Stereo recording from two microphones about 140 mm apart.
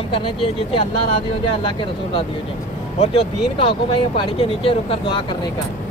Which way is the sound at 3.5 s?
40° left (ahead or behind).